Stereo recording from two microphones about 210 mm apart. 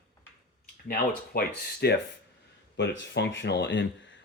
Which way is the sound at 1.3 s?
45° left (ahead or behind).